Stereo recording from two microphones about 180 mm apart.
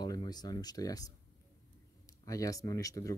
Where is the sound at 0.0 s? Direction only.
20° left (ahead or behind).